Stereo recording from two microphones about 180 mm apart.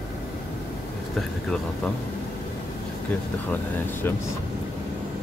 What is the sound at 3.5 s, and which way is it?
Speech, 10° left (ahead or behind).